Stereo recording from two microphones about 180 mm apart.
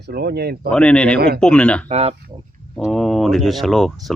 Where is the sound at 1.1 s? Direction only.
60° right (ahead or behind).